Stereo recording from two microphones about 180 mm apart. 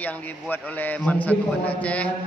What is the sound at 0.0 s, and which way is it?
A man's voice, 10° left (ahead or behind).